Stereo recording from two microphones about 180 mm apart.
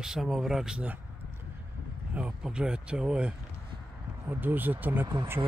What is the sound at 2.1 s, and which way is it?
Speech, 5° right (ahead or behind).